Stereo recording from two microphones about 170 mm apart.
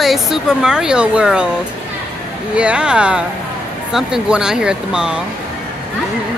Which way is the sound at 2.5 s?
5° right (ahead or behind).